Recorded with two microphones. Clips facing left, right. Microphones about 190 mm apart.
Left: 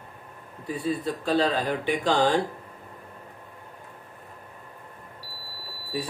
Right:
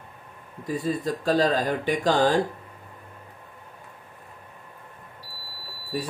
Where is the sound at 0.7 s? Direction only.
40° right (ahead or behind).